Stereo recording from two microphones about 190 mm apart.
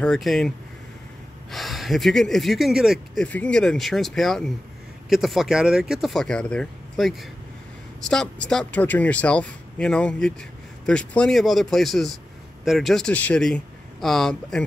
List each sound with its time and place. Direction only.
0.0 s speech: centre (ahead or behind)
1.5 s speech: centre (ahead or behind)